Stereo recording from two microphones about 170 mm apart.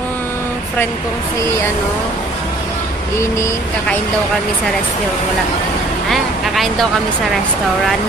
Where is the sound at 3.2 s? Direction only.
15° left (ahead or behind).